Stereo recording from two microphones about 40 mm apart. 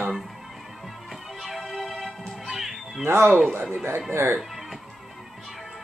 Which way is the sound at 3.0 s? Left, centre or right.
Right.